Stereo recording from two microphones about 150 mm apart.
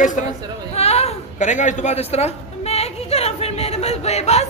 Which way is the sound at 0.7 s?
45° left (ahead or behind).